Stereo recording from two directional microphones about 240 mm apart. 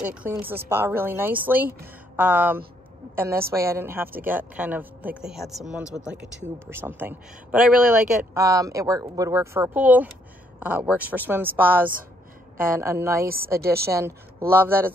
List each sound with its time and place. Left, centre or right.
0.0 s a man's voice: centre
13.5 s a woman's voice: right
14.5 s a man's voice: centre